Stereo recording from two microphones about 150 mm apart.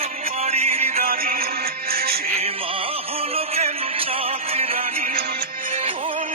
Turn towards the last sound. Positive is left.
turn(degrees=-35)  # may be behind; listen again after turning